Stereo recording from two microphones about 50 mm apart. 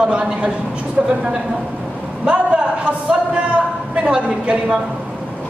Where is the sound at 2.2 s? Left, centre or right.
Right.